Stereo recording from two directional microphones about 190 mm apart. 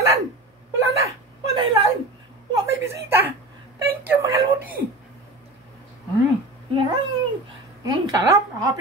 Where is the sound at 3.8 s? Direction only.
15° right (ahead or behind).